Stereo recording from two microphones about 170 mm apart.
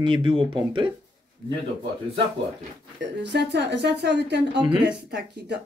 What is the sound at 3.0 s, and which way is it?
Speech, 85° right.